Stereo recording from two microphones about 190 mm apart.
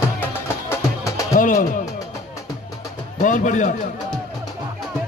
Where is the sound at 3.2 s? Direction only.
40° left (ahead or behind).